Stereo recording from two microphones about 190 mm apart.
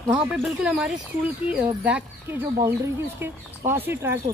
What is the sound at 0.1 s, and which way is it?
Speech, 5° right (ahead or behind).